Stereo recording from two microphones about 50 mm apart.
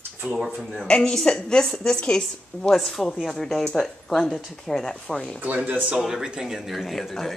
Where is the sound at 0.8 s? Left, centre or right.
Centre.